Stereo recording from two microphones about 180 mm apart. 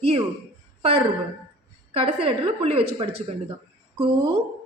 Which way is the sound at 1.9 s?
30° right (ahead or behind).